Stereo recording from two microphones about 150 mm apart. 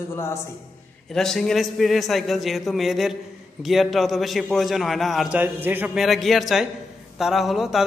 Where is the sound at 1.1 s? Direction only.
5° left (ahead or behind).